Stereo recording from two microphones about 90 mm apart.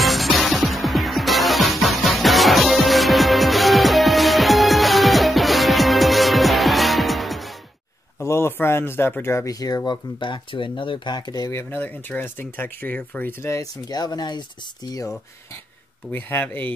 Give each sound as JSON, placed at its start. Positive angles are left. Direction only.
{"t": 0.0, "sound": "music", "side_deg": 0}
{"t": 8.2, "sound": "speech", "side_deg": 30}
{"t": 9.5, "sound": "speech", "side_deg": 45}
{"t": 11.5, "sound": "speech", "side_deg": 20}
{"t": 13.5, "sound": "speech", "side_deg": 40}
{"t": 16.1, "sound": "speech", "side_deg": 20}